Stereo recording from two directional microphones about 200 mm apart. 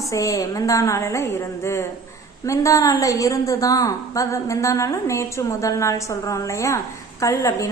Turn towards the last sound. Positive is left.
turn(degrees=15)  # may be behind; listen again after turning